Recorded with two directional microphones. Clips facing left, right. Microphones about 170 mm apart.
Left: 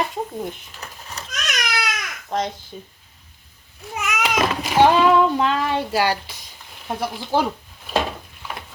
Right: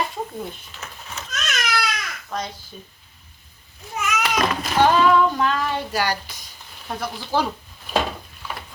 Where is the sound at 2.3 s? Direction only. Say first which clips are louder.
Left 5 dB; 25° left (ahead or behind).